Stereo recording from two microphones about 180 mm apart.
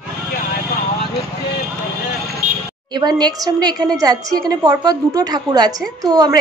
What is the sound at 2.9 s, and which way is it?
A woman's voice, 25° right (ahead or behind).